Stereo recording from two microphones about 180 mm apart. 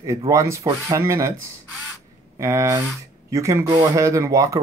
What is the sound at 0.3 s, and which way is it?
Speech, 15° right (ahead or behind).